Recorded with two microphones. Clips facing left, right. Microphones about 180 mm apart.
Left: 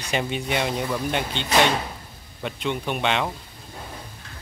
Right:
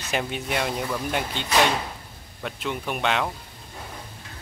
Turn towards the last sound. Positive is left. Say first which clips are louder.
# left 1 dB
turn(degrees=0)  # may be behind; listen again after turning